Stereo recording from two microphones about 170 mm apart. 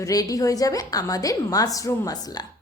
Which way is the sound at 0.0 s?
20° left (ahead or behind).